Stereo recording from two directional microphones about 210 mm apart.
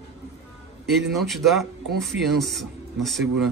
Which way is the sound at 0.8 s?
Centre (ahead or behind).